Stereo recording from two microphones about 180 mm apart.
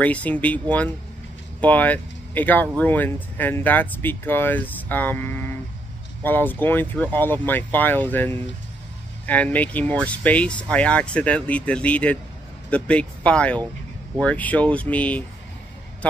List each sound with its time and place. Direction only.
0.0 s speech: 10° left (ahead or behind)